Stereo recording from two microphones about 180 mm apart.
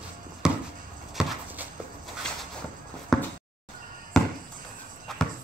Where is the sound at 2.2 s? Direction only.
5° left (ahead or behind).